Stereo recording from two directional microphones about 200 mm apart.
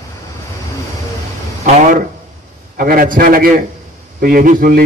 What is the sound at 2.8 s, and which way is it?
A man's voice, 45° right (ahead or behind).